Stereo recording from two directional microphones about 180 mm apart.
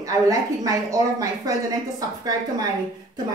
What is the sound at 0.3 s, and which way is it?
Speech, 20° right (ahead or behind).